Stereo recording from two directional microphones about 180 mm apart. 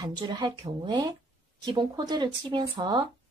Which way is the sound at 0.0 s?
25° right (ahead or behind).